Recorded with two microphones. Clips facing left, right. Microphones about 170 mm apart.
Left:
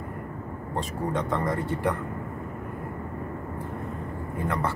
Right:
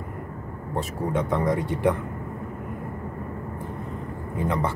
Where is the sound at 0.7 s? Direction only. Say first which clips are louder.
Right 3 dB; 10° right (ahead or behind).